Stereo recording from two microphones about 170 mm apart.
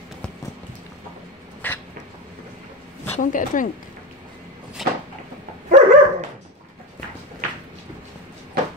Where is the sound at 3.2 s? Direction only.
50° left (ahead or behind).